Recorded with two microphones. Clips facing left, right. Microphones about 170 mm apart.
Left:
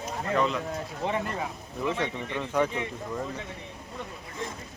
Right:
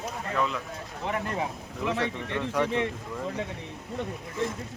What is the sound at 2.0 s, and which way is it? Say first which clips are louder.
Speech: right 1 dB; centre (ahead or behind).